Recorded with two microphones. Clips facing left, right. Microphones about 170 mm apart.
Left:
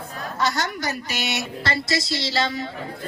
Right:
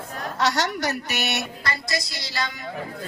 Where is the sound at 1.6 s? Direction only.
25° left (ahead or behind).